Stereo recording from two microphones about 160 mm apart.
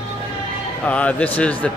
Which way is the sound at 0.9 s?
10° left (ahead or behind).